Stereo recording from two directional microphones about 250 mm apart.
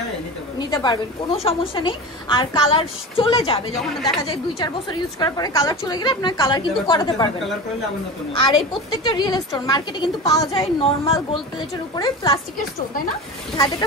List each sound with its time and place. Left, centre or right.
0.6 s a woman's voice: centre
3.8 s speech: centre
4.2 s a woman's voice: centre
8.5 s a woman's voice: centre